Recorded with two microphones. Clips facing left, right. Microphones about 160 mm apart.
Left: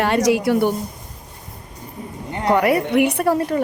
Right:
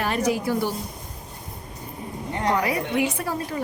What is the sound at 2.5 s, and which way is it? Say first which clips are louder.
Speech: left 8 dB; 65° left (ahead or behind).